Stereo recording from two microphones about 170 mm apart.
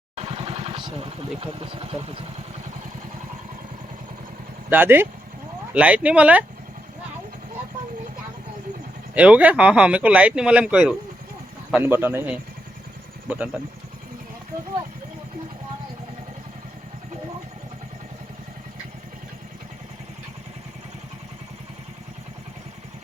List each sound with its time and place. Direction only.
0.2 s vehicle: 35° right (ahead or behind)
4.7 s speech: 10° right (ahead or behind)
9.1 s speech: 10° right (ahead or behind)